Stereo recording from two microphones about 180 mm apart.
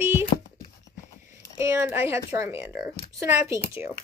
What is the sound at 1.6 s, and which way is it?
Speech, 15° right (ahead or behind).